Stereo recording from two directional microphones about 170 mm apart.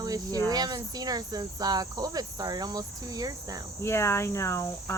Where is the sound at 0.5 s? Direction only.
20° right (ahead or behind).